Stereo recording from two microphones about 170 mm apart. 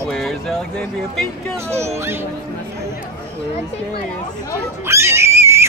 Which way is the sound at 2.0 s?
15° right (ahead or behind).